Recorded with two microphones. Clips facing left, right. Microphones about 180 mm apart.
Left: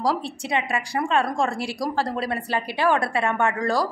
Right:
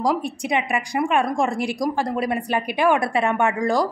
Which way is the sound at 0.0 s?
15° right (ahead or behind).